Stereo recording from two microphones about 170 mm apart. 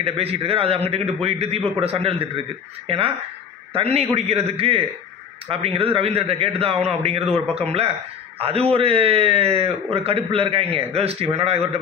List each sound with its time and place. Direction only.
0.0 s a man's voice: 35° right (ahead or behind)
8.4 s a man's voice: 35° right (ahead or behind)